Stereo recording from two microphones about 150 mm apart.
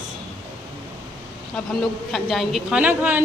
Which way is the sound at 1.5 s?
Centre (ahead or behind).